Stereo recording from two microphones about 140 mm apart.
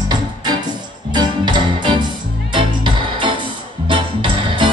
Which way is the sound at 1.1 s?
30° right (ahead or behind).